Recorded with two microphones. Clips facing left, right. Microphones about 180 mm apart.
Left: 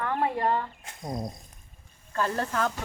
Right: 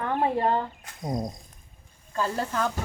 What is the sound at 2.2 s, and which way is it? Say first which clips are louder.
Speech: even; 10° right (ahead or behind).